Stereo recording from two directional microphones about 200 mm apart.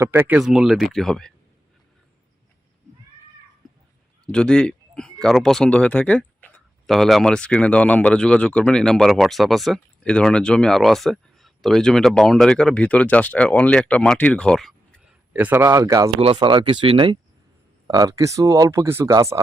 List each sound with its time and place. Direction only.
0.0 s speech: 10° right (ahead or behind)
4.3 s speech: 5° left (ahead or behind); by 19.4 s 15° right (ahead or behind)